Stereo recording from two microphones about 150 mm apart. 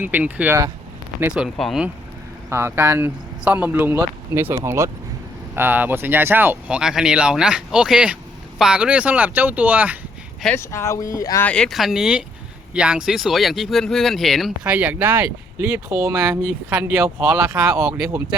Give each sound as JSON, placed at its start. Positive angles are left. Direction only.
{"t": 0.0, "sound": "speech", "side_deg": -10}
{"t": 1.3, "sound": "speech", "side_deg": 0}
{"t": 2.5, "sound": "speech", "side_deg": -15}
{"t": 10.4, "sound": "speech", "side_deg": 15}
{"t": 11.4, "sound": "speech", "side_deg": 5}
{"t": 16.0, "sound": "speech", "side_deg": -15}
{"t": 17.9, "sound": "speech", "side_deg": -5}